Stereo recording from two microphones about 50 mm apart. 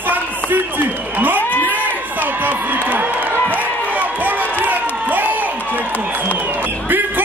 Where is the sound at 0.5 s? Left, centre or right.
Right.